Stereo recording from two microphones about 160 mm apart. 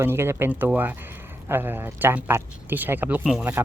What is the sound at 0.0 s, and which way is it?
Speech, 15° right (ahead or behind).